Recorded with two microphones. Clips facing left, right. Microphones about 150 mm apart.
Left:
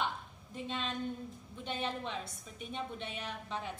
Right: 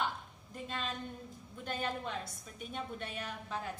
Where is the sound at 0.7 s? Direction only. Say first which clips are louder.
Left 3 dB; 5° right (ahead or behind).